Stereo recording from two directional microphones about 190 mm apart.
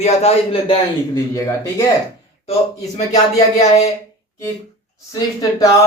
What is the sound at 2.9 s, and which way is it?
Speech, 35° left (ahead or behind).